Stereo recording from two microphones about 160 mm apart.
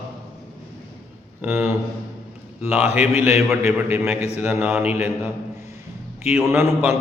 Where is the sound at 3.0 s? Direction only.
10° right (ahead or behind).